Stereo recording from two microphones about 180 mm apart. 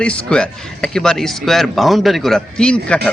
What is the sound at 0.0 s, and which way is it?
A man's voice, 5° left (ahead or behind).